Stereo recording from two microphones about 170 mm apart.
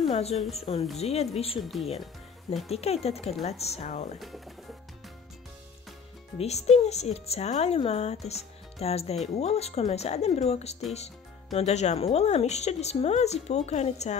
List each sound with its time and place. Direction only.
0.1 s a woman's voice: 40° left (ahead or behind)
1.6 s speech: centre (ahead or behind)
2.7 s a woman's voice: 35° left (ahead or behind)
4.2 s speech: centre (ahead or behind)
6.3 s a woman's voice: 40° left (ahead or behind)